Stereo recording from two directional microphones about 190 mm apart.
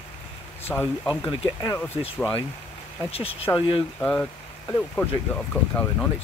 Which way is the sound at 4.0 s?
10° left (ahead or behind).